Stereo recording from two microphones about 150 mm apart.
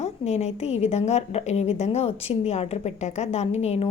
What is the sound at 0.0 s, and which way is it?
A woman's voice, 45° left (ahead or behind).